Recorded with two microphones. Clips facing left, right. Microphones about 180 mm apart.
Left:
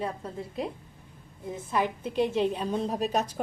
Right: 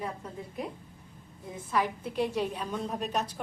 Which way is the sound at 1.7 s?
20° left (ahead or behind).